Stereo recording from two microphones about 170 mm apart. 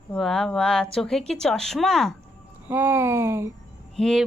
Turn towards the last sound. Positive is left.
turn(degrees=0)  # may be behind; listen again after turning